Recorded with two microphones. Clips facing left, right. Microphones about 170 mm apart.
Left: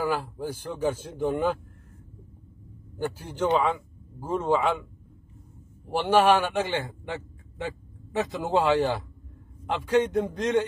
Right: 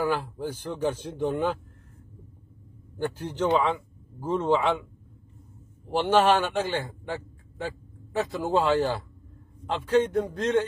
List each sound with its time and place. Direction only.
0.0 s speech: 10° left (ahead or behind)
3.0 s speech: 10° left (ahead or behind)
5.9 s a man's voice: 10° left (ahead or behind)